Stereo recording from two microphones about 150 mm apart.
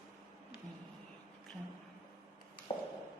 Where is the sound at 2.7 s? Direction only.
40° left (ahead or behind).